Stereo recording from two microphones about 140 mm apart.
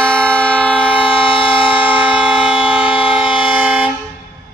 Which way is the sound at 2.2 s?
5° right (ahead or behind).